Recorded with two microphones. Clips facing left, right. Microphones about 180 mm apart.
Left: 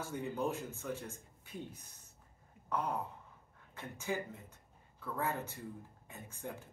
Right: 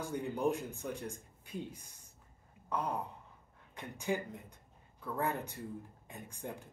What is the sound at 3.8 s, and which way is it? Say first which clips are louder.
Speech: right 3 dB; 15° right (ahead or behind).